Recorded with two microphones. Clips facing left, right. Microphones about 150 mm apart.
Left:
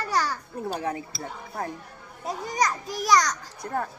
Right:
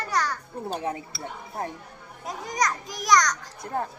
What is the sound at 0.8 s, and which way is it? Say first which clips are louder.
Speech: even; 25° right (ahead or behind).